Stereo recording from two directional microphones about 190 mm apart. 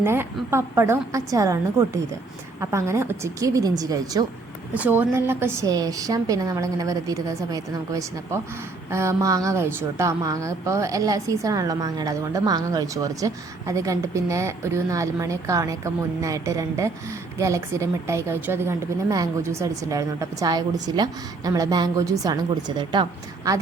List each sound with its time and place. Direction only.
0.0 s a woman's voice: 10° right (ahead or behind)
4.7 s a woman's voice: 10° right (ahead or behind); by 23.0 s 25° right (ahead or behind)